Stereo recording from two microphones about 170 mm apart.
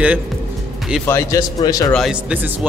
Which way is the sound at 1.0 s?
15° left (ahead or behind).